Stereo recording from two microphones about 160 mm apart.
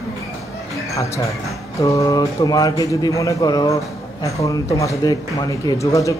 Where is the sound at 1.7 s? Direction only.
20° left (ahead or behind).